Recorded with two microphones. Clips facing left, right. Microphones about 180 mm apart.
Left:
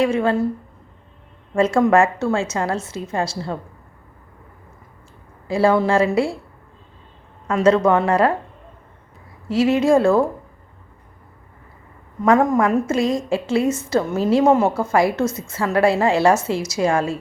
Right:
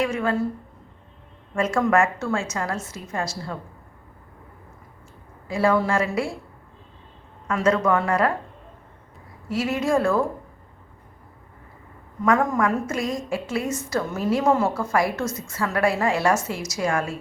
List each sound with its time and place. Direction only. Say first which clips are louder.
0.0 s a woman's voice: left 6 dB; 30° left (ahead or behind)
1.5 s a woman's voice: left 5 dB; 30° left (ahead or behind)
5.5 s a woman's voice: left 4 dB; 30° left (ahead or behind)
7.4 s a woman's voice: left 5 dB; 25° left (ahead or behind)
9.5 s a woman's voice: left 7 dB; 25° left (ahead or behind)
12.2 s a woman's voice: left 5 dB; 25° left (ahead or behind)